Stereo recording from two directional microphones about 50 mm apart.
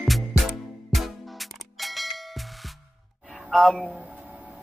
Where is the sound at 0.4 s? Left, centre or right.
Centre.